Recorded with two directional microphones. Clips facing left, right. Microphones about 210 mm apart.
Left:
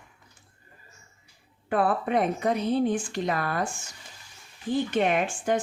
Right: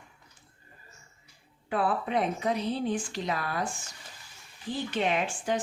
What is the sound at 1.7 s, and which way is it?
Speech, 50° left (ahead or behind).